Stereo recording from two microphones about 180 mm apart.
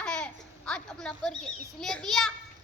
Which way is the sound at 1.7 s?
5° left (ahead or behind).